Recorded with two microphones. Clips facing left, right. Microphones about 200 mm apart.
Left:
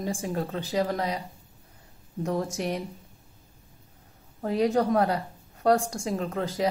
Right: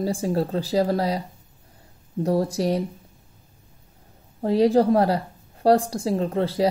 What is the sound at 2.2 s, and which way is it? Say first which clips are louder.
Speech: right 7 dB; 35° right (ahead or behind).